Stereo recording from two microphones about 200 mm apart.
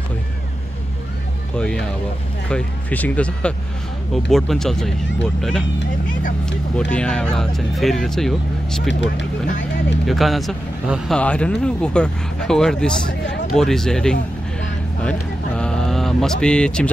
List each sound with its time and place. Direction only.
1.6 s speech: 5° left (ahead or behind)
8.8 s speech: 65° left (ahead or behind)
10.0 s speech: centre (ahead or behind)
15.0 s a sound: 5° left (ahead or behind)